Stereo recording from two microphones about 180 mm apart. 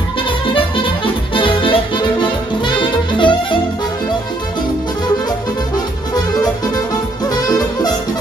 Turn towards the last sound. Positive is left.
turn(degrees=20)  # may be behind; listen again after turning